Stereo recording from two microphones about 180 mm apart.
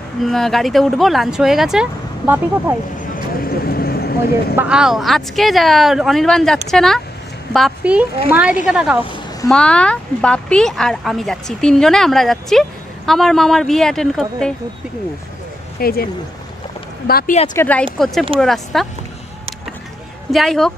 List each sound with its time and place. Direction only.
0.2 s speech: centre (ahead or behind)
3.2 s vehicle: 55° left (ahead or behind)
4.6 s speech: 5° right (ahead or behind)
9.0 s a sound: 25° left (ahead or behind)
9.5 s speech: 5° left (ahead or behind)
15.8 s speech: 55° left (ahead or behind)
17.1 s speech: 55° left (ahead or behind)
17.6 s speech: 10° left (ahead or behind)
20.2 s speech: centre (ahead or behind)